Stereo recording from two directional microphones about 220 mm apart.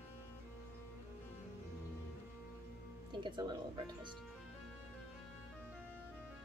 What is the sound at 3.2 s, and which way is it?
Speech, 20° right (ahead or behind).